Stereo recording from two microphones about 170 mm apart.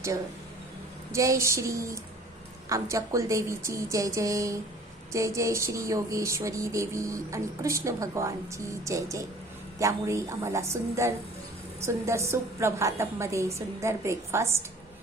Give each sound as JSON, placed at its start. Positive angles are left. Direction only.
{"t": 1.1, "sound": "speech", "side_deg": -20}